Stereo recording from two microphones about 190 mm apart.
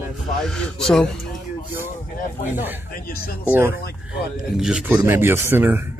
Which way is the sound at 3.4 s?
10° right (ahead or behind).